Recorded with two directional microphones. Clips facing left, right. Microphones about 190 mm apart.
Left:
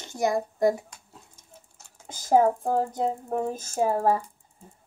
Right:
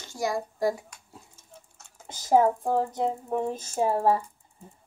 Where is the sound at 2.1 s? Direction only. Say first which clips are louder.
Even; 10° left (ahead or behind).